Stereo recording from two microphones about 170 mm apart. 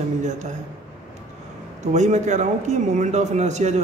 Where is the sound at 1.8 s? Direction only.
45° right (ahead or behind).